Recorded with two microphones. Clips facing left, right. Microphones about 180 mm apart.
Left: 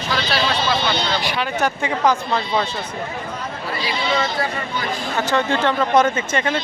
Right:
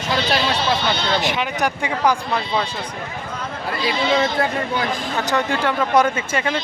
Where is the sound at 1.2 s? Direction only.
20° right (ahead or behind).